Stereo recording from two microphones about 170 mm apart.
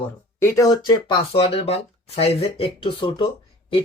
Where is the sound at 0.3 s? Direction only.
15° left (ahead or behind).